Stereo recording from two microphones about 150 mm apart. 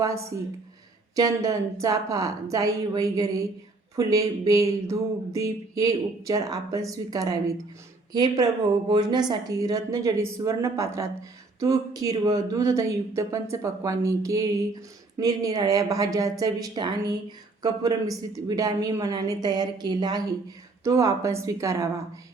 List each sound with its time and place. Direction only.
0.0 s speech: 20° right (ahead or behind)